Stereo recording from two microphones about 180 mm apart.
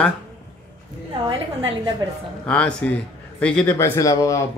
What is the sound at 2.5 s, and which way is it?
A man's voice, 5° left (ahead or behind).